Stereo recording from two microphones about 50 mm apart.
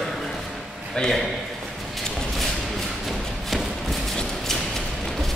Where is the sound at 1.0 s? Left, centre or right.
Centre.